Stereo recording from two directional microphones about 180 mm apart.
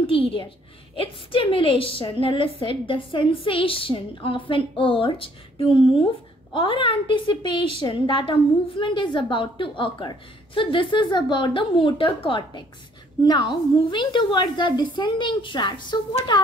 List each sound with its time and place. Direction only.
0.0 s a woman's voice: 30° left (ahead or behind)